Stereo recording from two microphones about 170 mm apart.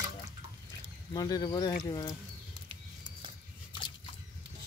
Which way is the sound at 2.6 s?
30° right (ahead or behind).